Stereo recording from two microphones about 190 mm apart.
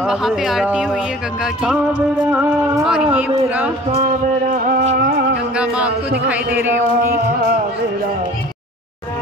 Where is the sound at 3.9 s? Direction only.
35° right (ahead or behind).